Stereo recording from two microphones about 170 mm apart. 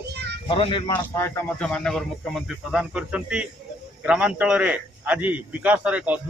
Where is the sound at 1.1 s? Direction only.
15° left (ahead or behind).